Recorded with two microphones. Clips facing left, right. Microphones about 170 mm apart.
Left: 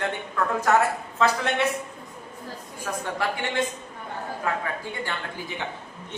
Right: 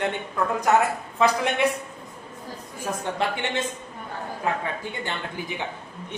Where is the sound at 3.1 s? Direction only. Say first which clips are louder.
Left 1 dB; 20° right (ahead or behind).